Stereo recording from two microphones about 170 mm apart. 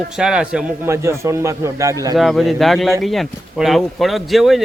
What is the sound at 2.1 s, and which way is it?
Speech, centre (ahead or behind).